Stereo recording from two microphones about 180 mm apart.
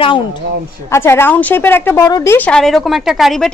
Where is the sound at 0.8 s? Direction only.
15° left (ahead or behind).